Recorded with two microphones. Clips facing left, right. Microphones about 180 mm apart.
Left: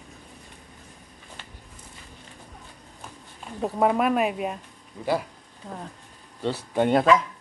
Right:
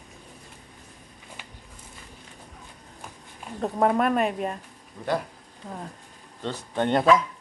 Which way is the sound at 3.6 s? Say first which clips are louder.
Even; 5° left (ahead or behind).